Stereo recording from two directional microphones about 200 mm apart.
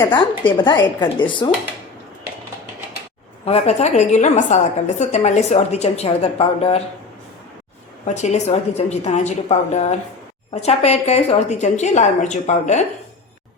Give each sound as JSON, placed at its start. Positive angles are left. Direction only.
{"t": 0.0, "sound": "a woman's voice", "side_deg": 25}
{"t": 3.4, "sound": "a woman's voice", "side_deg": 30}
{"t": 8.0, "sound": "a woman's voice", "side_deg": 35}